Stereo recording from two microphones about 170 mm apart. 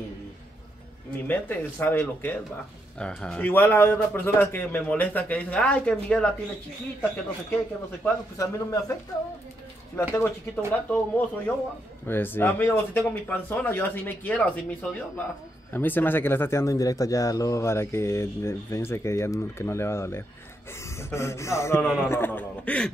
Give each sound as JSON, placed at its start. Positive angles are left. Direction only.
{"t": 1.2, "sound": "speech", "side_deg": 10}
{"t": 8.0, "sound": "speech", "side_deg": 20}
{"t": 9.9, "sound": "speech", "side_deg": 15}